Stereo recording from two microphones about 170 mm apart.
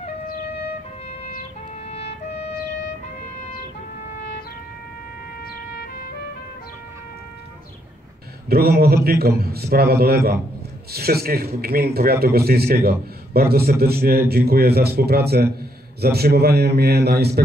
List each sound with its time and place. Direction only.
8.5 s a man's voice: 65° right (ahead or behind)